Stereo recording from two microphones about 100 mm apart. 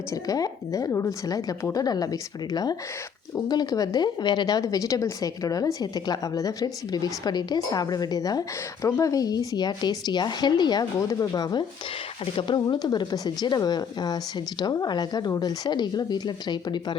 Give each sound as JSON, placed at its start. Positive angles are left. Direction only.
{"t": 0.1, "sound": "a woman's voice", "side_deg": 35}
{"t": 12.2, "sound": "speech", "side_deg": 55}